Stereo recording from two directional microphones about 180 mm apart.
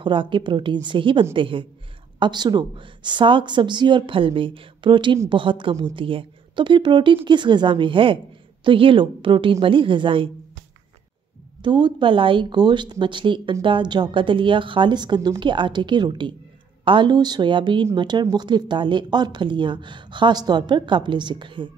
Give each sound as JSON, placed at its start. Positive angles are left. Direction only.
{"t": 0.0, "sound": "speech", "side_deg": -25}
{"t": 11.6, "sound": "speech", "side_deg": -25}